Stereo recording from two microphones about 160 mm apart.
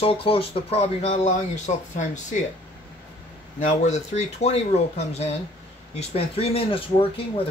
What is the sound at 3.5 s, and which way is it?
Speech, 50° left (ahead or behind).